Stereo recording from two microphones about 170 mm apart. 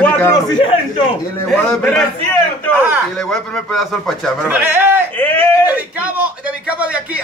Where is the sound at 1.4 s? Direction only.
5° left (ahead or behind).